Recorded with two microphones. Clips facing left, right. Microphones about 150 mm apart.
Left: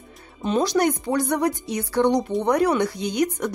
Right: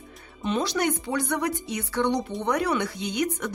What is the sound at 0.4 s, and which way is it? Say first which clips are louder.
Speech: left 5 dB; 40° left (ahead or behind).